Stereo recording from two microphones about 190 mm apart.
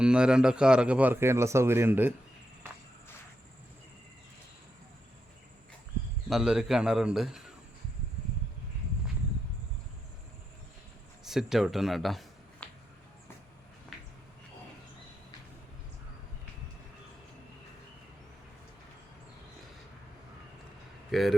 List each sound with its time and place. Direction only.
0.0 s a man's voice: 5° right (ahead or behind)
6.2 s a man's voice: centre (ahead or behind)
11.3 s speech: centre (ahead or behind)
21.1 s a man's voice: centre (ahead or behind)